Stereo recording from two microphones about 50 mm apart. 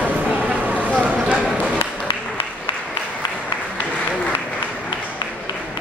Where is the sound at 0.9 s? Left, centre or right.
Right.